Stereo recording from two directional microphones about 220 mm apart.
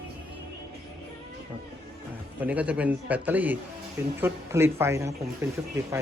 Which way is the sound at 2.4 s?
5° right (ahead or behind).